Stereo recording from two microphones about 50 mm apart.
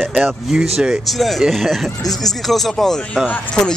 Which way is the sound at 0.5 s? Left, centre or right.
Centre.